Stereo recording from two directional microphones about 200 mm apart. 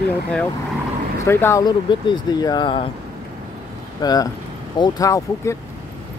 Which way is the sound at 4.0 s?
20° left (ahead or behind).